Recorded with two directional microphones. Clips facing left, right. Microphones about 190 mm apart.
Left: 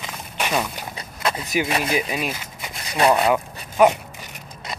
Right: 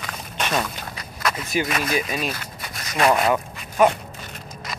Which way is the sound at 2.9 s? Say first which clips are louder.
Left 1 dB; 30° left (ahead or behind).